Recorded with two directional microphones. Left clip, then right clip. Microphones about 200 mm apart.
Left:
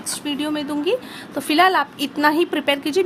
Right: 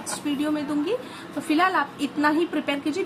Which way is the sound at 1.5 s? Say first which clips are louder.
Left 6 dB; 55° left (ahead or behind).